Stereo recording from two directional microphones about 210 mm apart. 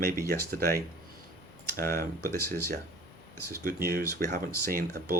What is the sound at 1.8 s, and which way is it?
Speech, 45° right (ahead or behind).